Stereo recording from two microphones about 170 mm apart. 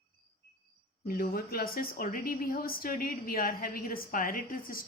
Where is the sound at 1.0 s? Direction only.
60° left (ahead or behind).